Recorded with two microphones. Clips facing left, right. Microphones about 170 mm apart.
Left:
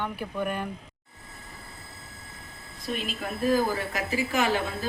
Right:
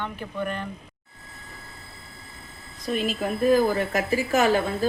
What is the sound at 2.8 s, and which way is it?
A woman's voice, 45° right (ahead or behind).